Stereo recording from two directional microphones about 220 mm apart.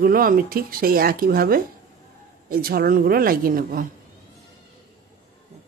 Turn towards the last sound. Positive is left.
turn(degrees=-40)  # may be behind; listen again after turning